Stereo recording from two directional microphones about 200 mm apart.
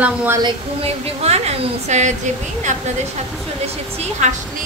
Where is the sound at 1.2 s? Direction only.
30° right (ahead or behind).